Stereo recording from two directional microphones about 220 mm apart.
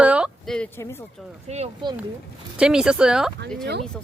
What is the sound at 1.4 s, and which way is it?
Speech, 30° right (ahead or behind).